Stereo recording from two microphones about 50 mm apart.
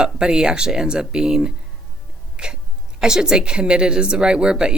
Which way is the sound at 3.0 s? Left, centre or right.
Centre.